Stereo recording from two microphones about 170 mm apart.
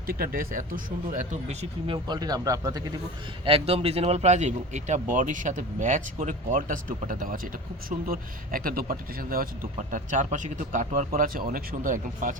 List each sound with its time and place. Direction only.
0.1 s speech: 55° right (ahead or behind)
1.9 s speech: 25° right (ahead or behind)
3.4 s speech: 35° right (ahead or behind); by 9.5 s 60° right (ahead or behind)
9.9 s speech: 50° right (ahead or behind)